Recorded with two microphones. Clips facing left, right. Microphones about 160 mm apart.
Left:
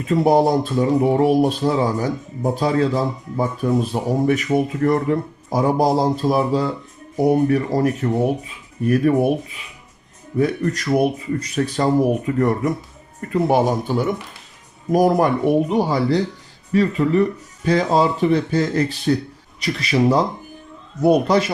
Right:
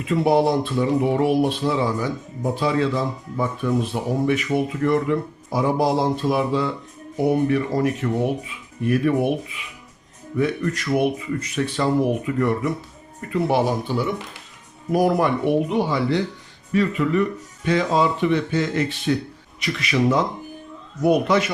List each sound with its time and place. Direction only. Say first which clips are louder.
0.1 s a man's voice: left 3 dB; 40° left (ahead or behind)